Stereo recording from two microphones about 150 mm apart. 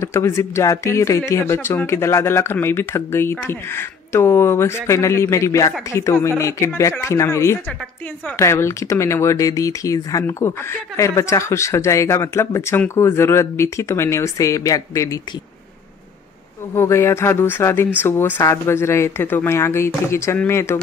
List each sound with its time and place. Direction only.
0.0 s speech: 15° left (ahead or behind)
16.7 s speech: 15° left (ahead or behind)